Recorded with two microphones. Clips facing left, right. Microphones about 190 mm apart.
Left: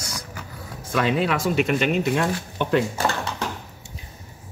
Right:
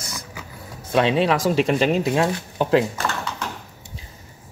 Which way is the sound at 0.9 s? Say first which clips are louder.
Right 3 dB; 30° right (ahead or behind).